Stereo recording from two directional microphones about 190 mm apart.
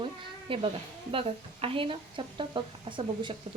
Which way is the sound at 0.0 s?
30° right (ahead or behind).